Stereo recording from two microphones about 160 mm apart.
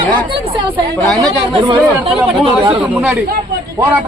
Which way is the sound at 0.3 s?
35° right (ahead or behind).